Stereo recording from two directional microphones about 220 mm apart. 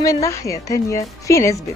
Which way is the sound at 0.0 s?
15° left (ahead or behind).